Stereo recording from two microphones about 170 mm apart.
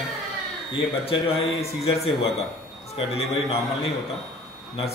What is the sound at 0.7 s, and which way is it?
A man's voice, 35° left (ahead or behind).